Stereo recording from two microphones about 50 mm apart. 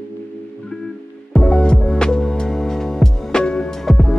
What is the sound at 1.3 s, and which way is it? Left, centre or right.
Music, centre.